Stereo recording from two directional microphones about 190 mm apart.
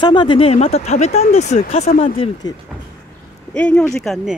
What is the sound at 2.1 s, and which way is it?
Speech, 30° left (ahead or behind).